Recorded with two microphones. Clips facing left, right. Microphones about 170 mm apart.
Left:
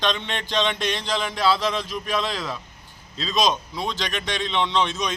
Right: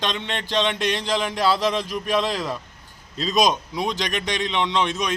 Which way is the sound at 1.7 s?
10° right (ahead or behind).